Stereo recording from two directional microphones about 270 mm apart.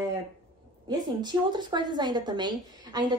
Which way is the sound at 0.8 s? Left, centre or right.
Centre.